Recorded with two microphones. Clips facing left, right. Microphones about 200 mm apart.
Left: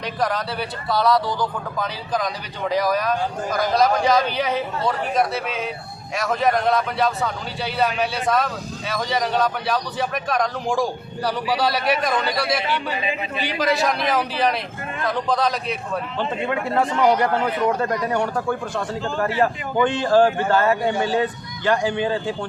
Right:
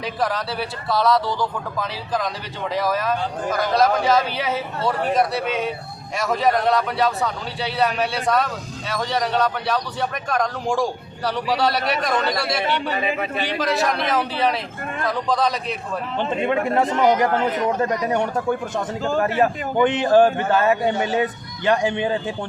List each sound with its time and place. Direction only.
0.2 s speech: centre (ahead or behind)
16.1 s a man's voice: 20° right (ahead or behind)